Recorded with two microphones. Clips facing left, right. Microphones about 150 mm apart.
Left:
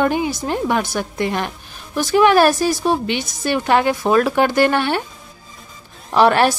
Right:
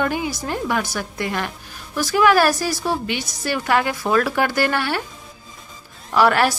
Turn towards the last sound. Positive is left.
turn(degrees=25)  # may be behind; listen again after turning